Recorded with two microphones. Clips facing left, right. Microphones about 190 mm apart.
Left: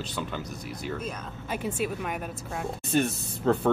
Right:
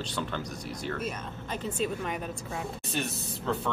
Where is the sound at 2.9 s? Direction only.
50° left (ahead or behind).